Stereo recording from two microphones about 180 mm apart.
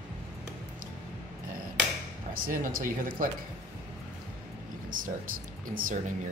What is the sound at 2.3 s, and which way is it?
Speech, 50° right (ahead or behind).